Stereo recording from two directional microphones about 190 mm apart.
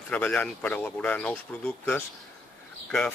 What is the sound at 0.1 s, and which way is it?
Speech, 10° left (ahead or behind).